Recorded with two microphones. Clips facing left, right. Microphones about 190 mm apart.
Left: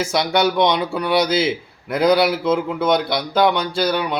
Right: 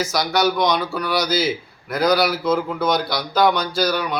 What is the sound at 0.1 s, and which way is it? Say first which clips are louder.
A man's voice: left 2 dB; 25° left (ahead or behind).